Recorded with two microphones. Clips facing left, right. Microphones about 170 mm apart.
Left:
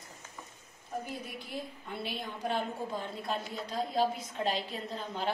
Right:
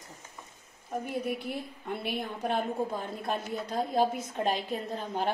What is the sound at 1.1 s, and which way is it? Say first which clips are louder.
A woman's voice: right 7 dB; 65° right (ahead or behind).